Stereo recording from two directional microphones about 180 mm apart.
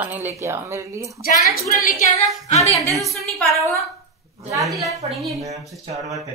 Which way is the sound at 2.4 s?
35° left (ahead or behind).